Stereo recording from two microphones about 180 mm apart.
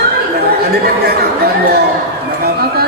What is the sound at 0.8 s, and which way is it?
Speech, 60° right (ahead or behind).